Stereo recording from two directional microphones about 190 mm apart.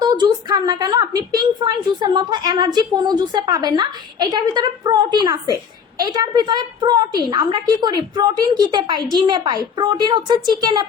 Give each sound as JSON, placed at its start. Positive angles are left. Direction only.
{"t": 0.0, "sound": "a woman's voice", "side_deg": -20}